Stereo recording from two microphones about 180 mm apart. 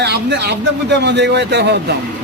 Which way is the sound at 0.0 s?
70° right (ahead or behind).